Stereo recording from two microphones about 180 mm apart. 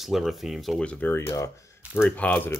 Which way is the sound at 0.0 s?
Centre (ahead or behind).